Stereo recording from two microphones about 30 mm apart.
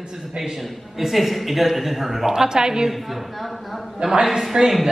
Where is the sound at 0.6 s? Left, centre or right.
Centre.